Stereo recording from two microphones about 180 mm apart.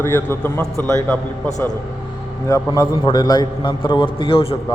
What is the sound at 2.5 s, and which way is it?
A man's voice, 20° left (ahead or behind).